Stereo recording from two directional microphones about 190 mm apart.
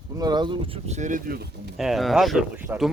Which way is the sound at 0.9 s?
40° right (ahead or behind).